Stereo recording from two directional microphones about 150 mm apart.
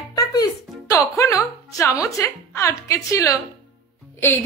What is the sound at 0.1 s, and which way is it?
Music, 25° left (ahead or behind).